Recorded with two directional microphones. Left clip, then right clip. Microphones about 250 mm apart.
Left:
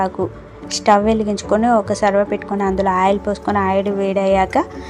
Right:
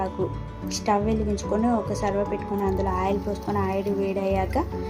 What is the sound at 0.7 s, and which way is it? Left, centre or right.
A woman's voice, centre.